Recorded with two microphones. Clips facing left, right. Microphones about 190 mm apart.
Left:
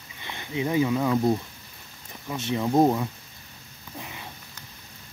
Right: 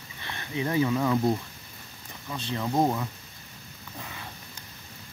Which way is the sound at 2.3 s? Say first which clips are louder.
Left 5 dB; 15° left (ahead or behind).